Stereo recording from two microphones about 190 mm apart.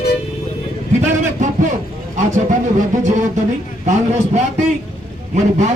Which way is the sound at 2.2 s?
40° right (ahead or behind).